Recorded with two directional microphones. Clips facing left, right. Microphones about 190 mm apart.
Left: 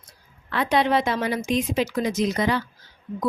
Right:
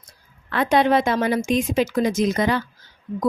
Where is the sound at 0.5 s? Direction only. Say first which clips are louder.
Right 3 dB; 50° right (ahead or behind).